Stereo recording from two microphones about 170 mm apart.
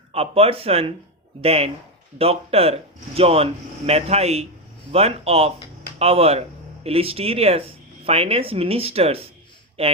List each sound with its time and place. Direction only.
0.1 s speech: 35° right (ahead or behind)